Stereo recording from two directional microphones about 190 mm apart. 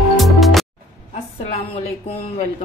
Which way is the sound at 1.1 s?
35° left (ahead or behind).